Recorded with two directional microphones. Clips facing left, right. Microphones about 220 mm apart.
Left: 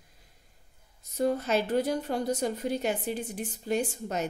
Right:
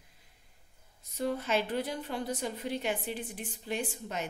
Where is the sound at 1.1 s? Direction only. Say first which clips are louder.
Left 4 dB; 40° left (ahead or behind).